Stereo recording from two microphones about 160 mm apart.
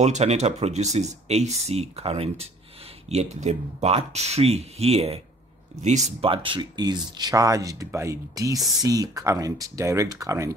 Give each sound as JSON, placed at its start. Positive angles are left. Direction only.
{"t": 0.0, "sound": "speech", "side_deg": -45}